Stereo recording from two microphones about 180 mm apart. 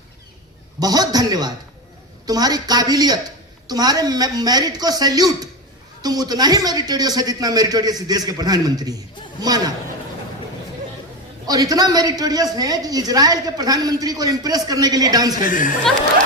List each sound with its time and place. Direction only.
0.8 s a man's voice: 20° right (ahead or behind)
11.4 s a man's voice: 20° right (ahead or behind)
15.4 s speech: 45° left (ahead or behind)